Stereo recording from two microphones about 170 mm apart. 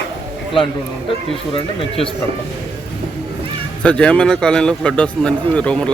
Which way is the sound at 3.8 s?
5° left (ahead or behind).